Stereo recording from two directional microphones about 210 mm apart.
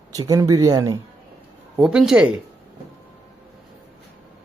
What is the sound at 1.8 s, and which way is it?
Speech, 5° right (ahead or behind).